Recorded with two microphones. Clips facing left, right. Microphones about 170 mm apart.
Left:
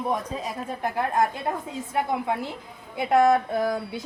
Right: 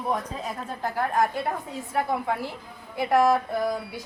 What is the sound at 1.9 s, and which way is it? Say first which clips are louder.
Speech: even; 20° left (ahead or behind).